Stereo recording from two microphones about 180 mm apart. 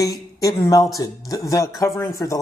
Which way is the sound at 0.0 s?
20° left (ahead or behind).